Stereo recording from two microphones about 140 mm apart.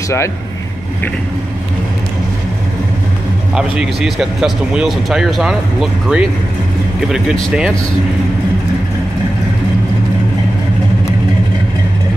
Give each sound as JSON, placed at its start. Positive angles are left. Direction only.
{"t": 3.5, "sound": "a man's voice", "side_deg": -5}